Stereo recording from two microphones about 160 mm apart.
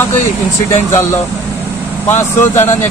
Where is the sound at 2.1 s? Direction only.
15° left (ahead or behind).